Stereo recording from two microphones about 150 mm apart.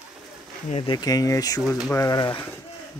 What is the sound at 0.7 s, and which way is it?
Speech, 40° left (ahead or behind).